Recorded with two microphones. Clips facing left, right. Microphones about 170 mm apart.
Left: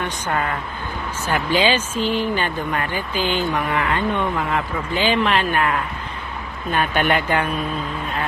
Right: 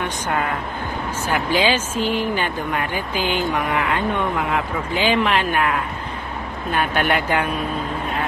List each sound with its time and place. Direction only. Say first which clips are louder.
1.2 s speech: left 1 dB; 10° right (ahead or behind)
6.9 s speech: left 1 dB; 5° right (ahead or behind)